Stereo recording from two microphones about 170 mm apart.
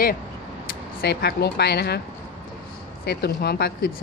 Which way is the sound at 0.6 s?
70° left (ahead or behind).